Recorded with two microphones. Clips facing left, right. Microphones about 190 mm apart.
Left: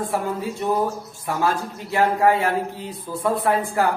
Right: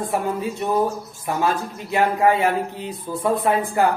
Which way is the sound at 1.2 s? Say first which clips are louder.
Right 1 dB; 20° right (ahead or behind).